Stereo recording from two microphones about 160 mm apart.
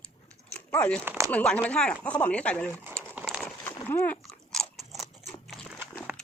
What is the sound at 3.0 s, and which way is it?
Biting, 5° right (ahead or behind).